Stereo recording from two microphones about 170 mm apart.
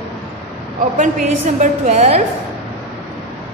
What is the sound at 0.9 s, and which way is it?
A woman's voice, 45° right (ahead or behind).